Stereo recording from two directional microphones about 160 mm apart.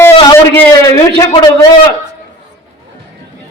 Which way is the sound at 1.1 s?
30° left (ahead or behind).